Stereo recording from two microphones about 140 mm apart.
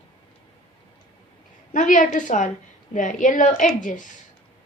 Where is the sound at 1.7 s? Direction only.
65° left (ahead or behind).